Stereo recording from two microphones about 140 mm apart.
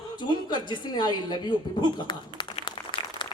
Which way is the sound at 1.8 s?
35° left (ahead or behind).